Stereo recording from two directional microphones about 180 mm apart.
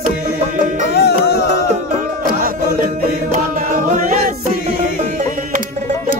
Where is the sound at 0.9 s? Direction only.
60° left (ahead or behind).